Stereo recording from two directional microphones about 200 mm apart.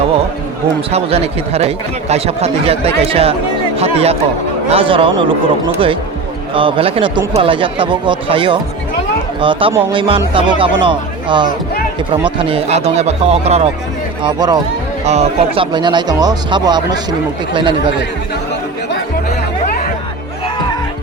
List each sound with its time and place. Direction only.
0.9 s speech: 30° right (ahead or behind)
6.5 s speech: 25° right (ahead or behind)
15.0 s speech: 35° right (ahead or behind)